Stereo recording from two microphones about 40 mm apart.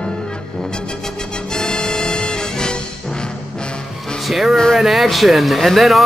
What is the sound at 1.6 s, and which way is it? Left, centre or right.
Music, centre.